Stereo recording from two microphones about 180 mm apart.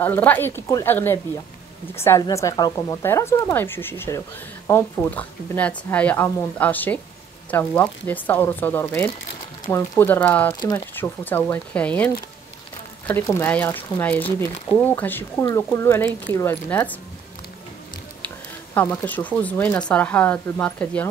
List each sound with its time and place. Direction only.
0.0 s speech: 10° left (ahead or behind)
18.8 s speech: 10° left (ahead or behind)